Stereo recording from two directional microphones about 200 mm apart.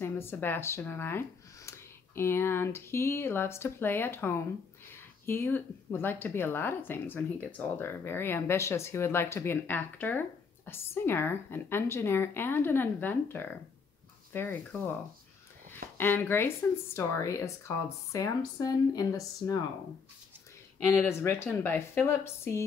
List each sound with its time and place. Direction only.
0.0 s speech: 10° left (ahead or behind)
20.9 s speech: 10° left (ahead or behind)